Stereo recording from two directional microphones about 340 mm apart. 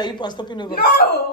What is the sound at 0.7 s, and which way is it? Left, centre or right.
Speech, left.